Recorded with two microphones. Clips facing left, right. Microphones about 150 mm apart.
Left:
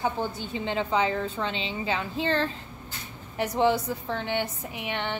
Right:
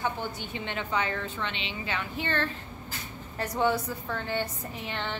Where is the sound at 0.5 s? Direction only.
25° left (ahead or behind).